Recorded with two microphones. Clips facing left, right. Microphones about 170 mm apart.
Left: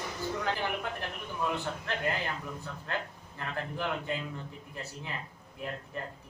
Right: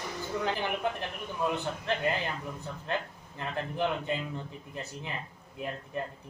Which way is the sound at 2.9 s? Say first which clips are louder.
Right 3 dB; 20° right (ahead or behind).